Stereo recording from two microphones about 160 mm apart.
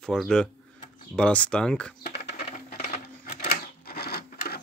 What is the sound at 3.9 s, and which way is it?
Printer, 80° left.